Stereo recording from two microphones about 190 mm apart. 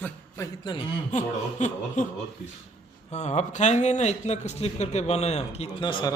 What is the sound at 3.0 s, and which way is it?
Speech, 35° left (ahead or behind).